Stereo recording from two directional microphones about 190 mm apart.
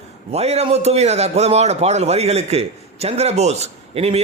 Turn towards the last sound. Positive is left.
turn(degrees=-35)  # may be behind; listen again after turning